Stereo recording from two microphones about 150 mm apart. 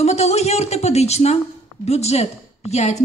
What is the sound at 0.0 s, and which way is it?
A woman's voice, 45° left (ahead or behind).